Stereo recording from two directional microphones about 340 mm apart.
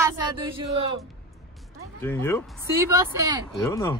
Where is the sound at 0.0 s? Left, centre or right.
Centre.